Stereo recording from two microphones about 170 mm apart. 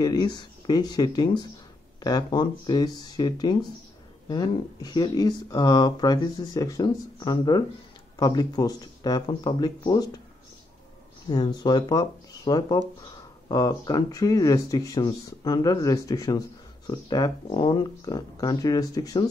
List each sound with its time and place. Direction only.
0.0 s speech: 25° left (ahead or behind)
11.2 s speech: 25° left (ahead or behind)